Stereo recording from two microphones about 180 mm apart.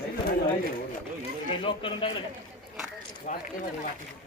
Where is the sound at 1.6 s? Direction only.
30° left (ahead or behind).